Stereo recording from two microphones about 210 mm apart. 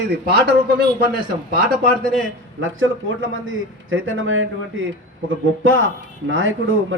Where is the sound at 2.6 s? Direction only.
70° right (ahead or behind).